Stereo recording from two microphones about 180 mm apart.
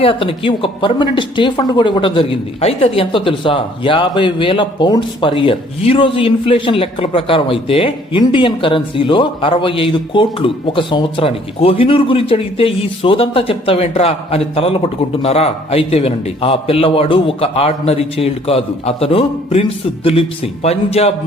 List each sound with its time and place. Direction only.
0.0 s speech: 30° left (ahead or behind)